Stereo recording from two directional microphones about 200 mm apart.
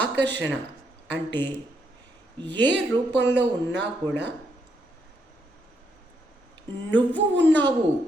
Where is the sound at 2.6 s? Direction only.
60° right (ahead or behind).